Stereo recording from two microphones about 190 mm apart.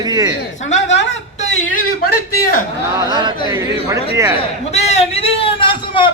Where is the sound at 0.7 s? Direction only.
75° left (ahead or behind).